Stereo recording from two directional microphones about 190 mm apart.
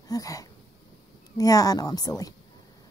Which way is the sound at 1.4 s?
20° left (ahead or behind).